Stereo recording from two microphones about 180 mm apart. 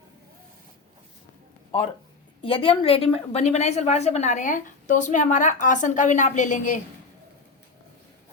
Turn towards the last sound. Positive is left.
turn(degrees=45)  # may be behind; listen again after turning